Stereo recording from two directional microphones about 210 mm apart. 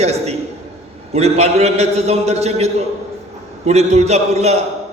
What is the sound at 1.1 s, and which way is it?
A man's voice, 30° right (ahead or behind).